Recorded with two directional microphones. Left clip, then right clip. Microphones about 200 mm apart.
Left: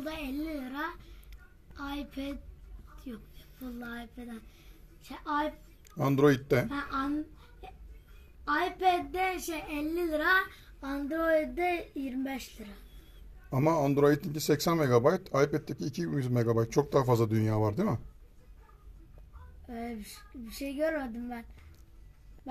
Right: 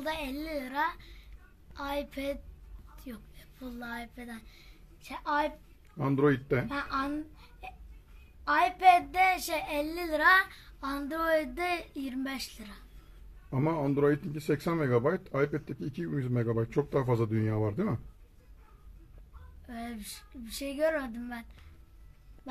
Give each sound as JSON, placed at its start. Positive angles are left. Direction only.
{"t": 0.0, "sound": "a child's voice", "side_deg": -10}
{"t": 3.0, "sound": "a woman's voice", "side_deg": -15}
{"t": 5.9, "sound": "speech", "side_deg": 5}
{"t": 8.5, "sound": "a child's voice", "side_deg": -10}
{"t": 13.5, "sound": "speech", "side_deg": 0}
{"t": 19.7, "sound": "a child's voice", "side_deg": -15}